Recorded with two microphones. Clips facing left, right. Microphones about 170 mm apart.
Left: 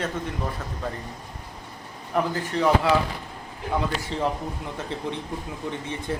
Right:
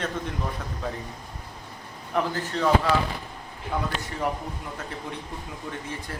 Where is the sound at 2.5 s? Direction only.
15° left (ahead or behind).